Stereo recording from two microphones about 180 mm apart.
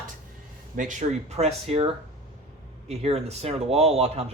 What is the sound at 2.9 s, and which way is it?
Speech, 35° right (ahead or behind).